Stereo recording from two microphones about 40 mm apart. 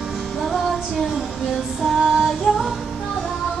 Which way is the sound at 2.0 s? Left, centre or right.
Right.